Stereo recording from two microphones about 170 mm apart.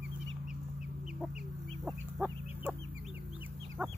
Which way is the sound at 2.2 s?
10° right (ahead or behind).